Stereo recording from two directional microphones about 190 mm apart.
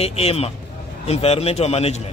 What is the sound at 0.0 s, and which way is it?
A man's voice, 30° left (ahead or behind).